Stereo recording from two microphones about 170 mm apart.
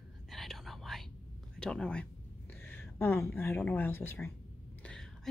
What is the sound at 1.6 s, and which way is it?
Speech, 5° left (ahead or behind).